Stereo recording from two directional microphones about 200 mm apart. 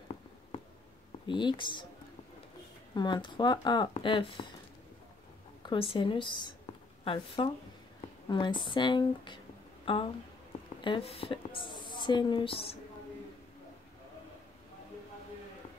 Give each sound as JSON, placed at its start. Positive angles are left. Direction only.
{"t": 1.2, "sound": "speech", "side_deg": 25}
{"t": 2.9, "sound": "speech", "side_deg": 20}
{"t": 5.6, "sound": "a woman's voice", "side_deg": 25}